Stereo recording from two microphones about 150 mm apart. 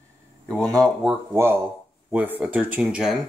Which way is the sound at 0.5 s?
5° left (ahead or behind).